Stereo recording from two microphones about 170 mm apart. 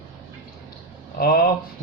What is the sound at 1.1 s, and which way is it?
Speech, 65° left (ahead or behind).